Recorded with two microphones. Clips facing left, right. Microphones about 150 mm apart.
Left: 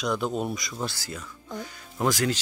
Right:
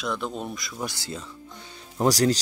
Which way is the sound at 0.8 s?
20° right (ahead or behind).